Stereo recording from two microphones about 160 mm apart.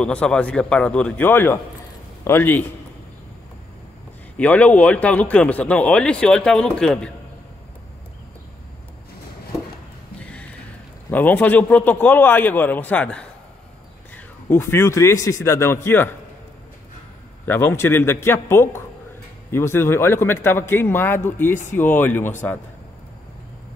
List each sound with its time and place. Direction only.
0.0 s a man's voice: 5° left (ahead or behind)
4.4 s a man's voice: 10° left (ahead or behind)
11.1 s a man's voice: 10° left (ahead or behind)
17.5 s a man's voice: 15° left (ahead or behind)